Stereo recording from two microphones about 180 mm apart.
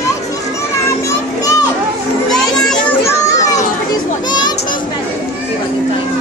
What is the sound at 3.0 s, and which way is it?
Children playing, 20° left (ahead or behind).